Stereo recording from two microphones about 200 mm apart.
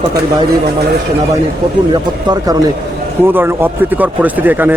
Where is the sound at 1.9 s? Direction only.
20° right (ahead or behind).